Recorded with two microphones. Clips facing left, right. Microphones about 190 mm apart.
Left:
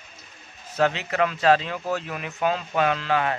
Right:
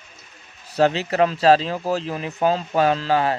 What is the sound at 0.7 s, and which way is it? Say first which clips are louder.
Speech: right 4 dB; 35° right (ahead or behind).